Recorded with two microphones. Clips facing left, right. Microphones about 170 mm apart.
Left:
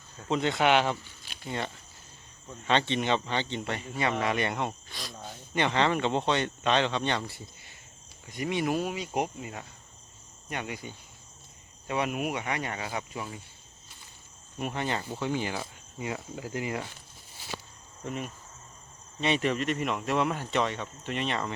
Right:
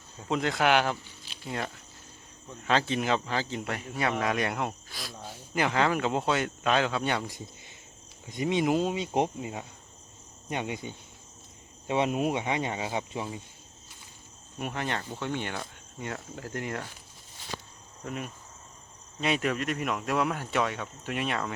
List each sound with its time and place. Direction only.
0.2 s speech: centre (ahead or behind); by 13.4 s 25° right (ahead or behind)
14.6 s speech: centre (ahead or behind)
18.0 s cricket: centre (ahead or behind)
19.2 s speech: centre (ahead or behind)